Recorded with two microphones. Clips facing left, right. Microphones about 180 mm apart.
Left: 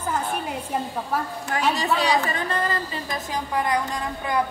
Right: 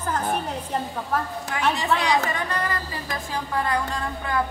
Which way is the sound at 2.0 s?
30° left (ahead or behind).